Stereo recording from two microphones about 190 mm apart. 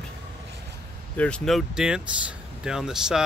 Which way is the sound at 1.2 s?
5° left (ahead or behind).